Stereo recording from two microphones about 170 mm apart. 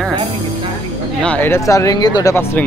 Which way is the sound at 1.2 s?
10° left (ahead or behind).